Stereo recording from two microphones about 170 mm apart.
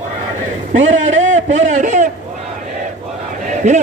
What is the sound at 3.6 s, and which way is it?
Speech, 45° right (ahead or behind).